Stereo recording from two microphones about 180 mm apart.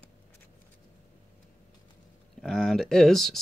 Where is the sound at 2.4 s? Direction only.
5° left (ahead or behind).